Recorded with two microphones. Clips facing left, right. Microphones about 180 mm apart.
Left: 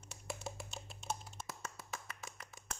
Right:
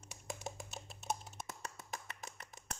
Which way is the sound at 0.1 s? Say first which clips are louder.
Even; 15° right (ahead or behind).